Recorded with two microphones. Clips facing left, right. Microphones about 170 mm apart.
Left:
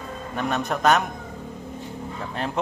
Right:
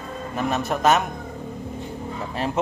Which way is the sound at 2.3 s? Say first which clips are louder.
Right 3 dB; 5° right (ahead or behind).